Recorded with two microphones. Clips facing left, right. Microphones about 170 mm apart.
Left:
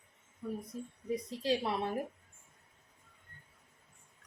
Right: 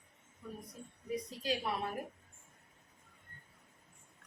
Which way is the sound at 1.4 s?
25° left (ahead or behind).